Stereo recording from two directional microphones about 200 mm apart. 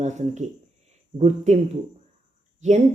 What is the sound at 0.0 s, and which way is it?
Speech, 35° right (ahead or behind).